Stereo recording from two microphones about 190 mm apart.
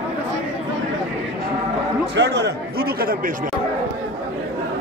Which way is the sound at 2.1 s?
60° right (ahead or behind).